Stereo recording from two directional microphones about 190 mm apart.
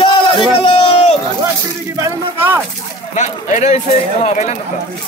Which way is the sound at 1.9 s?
15° right (ahead or behind).